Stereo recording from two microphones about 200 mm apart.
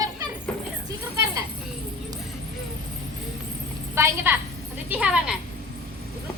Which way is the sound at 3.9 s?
15° right (ahead or behind).